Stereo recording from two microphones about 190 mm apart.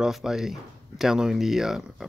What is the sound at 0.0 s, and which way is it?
Speech, centre (ahead or behind).